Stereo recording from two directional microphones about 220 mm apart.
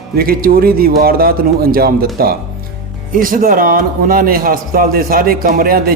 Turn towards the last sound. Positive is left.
turn(degrees=-40)  # may be behind; listen again after turning